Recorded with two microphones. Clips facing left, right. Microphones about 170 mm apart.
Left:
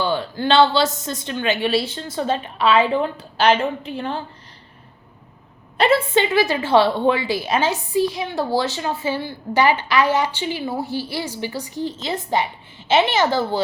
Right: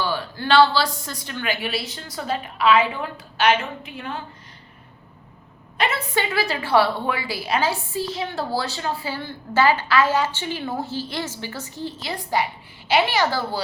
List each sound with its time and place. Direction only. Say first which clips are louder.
0.0 s a man's voice: left 4 dB; 25° left (ahead or behind)
5.7 s a woman's voice: left 8 dB; 30° left (ahead or behind)
6.1 s a woman's voice: left 6 dB; 20° left (ahead or behind)